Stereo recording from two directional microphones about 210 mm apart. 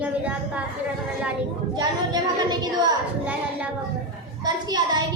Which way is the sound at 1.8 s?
20° right (ahead or behind).